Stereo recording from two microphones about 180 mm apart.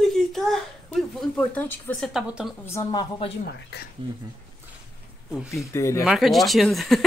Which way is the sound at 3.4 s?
60° left (ahead or behind).